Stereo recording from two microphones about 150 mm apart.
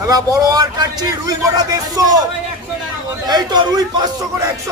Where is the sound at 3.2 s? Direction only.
25° right (ahead or behind).